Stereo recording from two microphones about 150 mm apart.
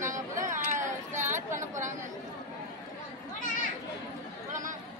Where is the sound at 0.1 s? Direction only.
55° right (ahead or behind).